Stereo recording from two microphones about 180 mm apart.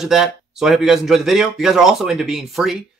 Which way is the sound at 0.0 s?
Centre (ahead or behind).